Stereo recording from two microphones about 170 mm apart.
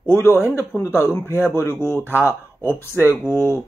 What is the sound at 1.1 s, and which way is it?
Speech, 15° left (ahead or behind).